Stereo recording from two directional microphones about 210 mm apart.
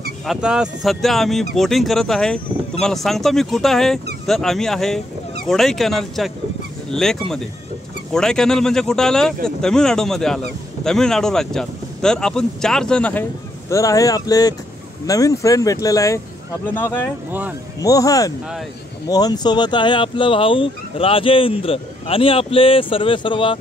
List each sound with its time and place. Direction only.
0.3 s speech: 5° right (ahead or behind)
13.7 s speech: 15° left (ahead or behind)
17.3 s speech: 10° right (ahead or behind)
17.8 s speech: 15° left (ahead or behind)